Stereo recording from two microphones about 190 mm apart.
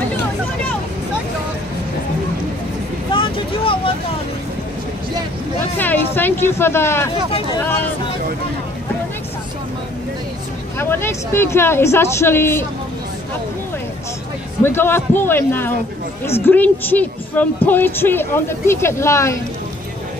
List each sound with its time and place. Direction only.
3.1 s vehicle: 25° left (ahead or behind)
5.6 s a sound: 10° left (ahead or behind)
10.8 s speech: 10° left (ahead or behind)
14.6 s speech: 10° left (ahead or behind)